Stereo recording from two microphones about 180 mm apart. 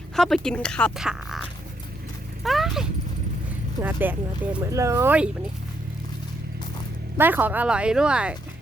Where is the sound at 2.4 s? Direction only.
Centre (ahead or behind).